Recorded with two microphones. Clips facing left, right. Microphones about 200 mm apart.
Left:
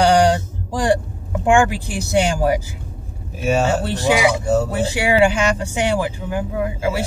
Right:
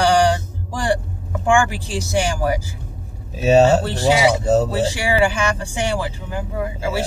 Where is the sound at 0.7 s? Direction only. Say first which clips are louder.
Left 3 dB; 20° left (ahead or behind).